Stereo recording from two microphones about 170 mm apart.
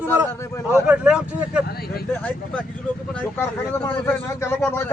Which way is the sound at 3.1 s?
10° left (ahead or behind).